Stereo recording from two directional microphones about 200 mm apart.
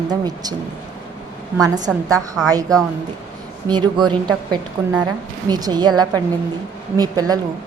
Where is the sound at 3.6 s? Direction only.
20° right (ahead or behind).